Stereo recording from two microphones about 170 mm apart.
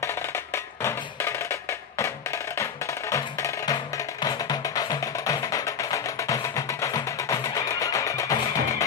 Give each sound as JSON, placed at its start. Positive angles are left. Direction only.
{"t": 0.8, "sound": "music", "side_deg": 15}